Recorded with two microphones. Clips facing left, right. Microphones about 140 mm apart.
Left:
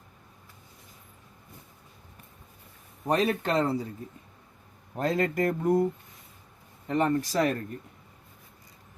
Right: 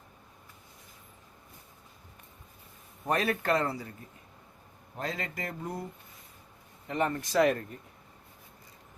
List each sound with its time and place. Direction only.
3.1 s speech: 20° left (ahead or behind)
4.9 s speech: 45° left (ahead or behind)
6.8 s speech: 35° left (ahead or behind)